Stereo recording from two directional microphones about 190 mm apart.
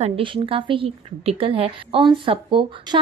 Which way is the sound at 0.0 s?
30° right (ahead or behind).